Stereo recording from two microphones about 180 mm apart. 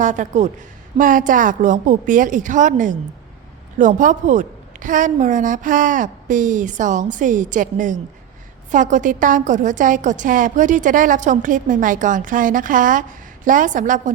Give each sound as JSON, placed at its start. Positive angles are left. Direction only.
{"t": 0.0, "sound": "a woman's voice", "side_deg": -45}